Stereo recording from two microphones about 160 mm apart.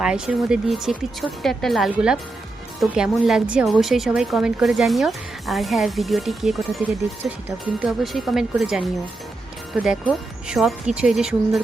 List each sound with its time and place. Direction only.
0.0 s a woman's voice: 5° right (ahead or behind)